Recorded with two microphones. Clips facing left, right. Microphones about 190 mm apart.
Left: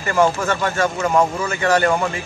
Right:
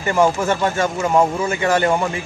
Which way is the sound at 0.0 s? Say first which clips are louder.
Right 1 dB; 20° right (ahead or behind).